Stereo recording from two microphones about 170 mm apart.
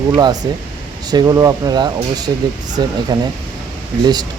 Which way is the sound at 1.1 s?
25° right (ahead or behind).